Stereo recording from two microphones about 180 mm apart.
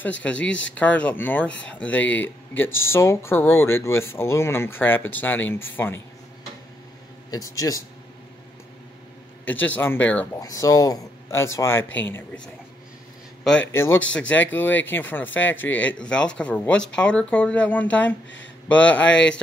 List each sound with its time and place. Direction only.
0.2 s speech: 5° left (ahead or behind)
7.2 s speech: 20° left (ahead or behind)
9.4 s speech: 10° left (ahead or behind)
13.4 s a sound: 5° left (ahead or behind)
13.7 s speech: 15° left (ahead or behind)